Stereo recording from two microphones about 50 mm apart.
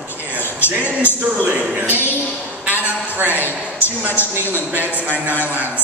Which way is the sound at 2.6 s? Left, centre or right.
Right.